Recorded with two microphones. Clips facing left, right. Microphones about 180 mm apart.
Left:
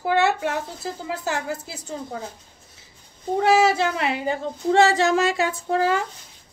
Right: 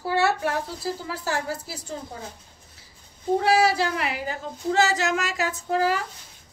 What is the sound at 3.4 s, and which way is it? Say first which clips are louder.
Speech: left 4 dB; 20° left (ahead or behind).